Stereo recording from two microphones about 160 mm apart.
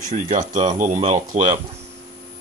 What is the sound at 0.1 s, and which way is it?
Speech, 50° right (ahead or behind).